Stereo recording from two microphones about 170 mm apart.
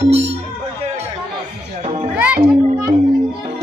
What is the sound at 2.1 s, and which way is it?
Music, 10° right (ahead or behind).